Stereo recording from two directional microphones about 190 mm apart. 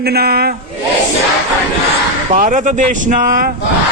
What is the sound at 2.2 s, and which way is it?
Speech, 40° right (ahead or behind).